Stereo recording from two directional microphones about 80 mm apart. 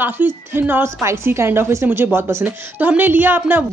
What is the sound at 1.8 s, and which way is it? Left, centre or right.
A woman's voice, centre.